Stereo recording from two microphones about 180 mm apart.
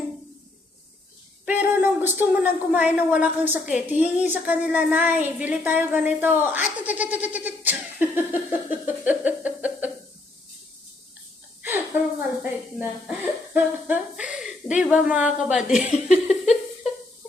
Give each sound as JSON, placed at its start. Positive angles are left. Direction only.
{"t": 1.5, "sound": "speech", "side_deg": -10}
{"t": 9.0, "sound": "a sound", "side_deg": -10}
{"t": 12.4, "sound": "speech", "side_deg": -5}
{"t": 15.9, "sound": "laughter", "side_deg": 40}